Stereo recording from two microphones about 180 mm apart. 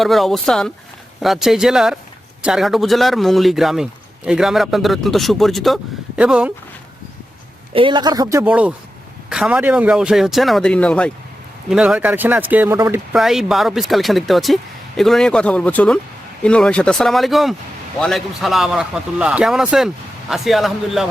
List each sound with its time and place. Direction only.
0.0 s a man's voice: centre (ahead or behind)
7.7 s a man's voice: 30° right (ahead or behind)
13.1 s a man's voice: centre (ahead or behind)